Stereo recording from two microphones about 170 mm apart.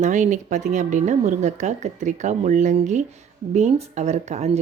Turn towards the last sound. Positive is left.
turn(degrees=-40)  # may be behind; listen again after turning